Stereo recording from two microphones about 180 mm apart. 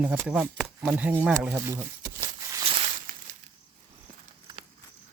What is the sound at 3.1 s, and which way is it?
Crushing, 50° right (ahead or behind).